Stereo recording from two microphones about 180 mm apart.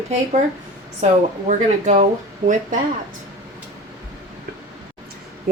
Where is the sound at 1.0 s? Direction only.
40° right (ahead or behind).